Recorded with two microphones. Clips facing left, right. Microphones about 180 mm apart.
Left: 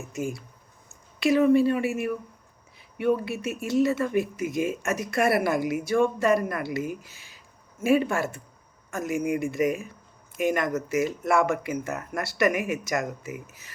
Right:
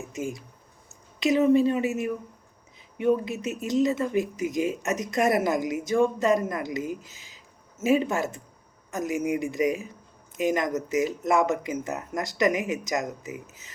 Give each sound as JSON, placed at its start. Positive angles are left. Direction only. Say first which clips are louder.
{"t": 0.0, "sound": "speech", "louder": "left 1 dB", "side_deg": -15}